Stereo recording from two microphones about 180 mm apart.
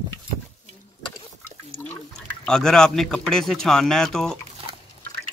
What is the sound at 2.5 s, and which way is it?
Speech, 5° left (ahead or behind).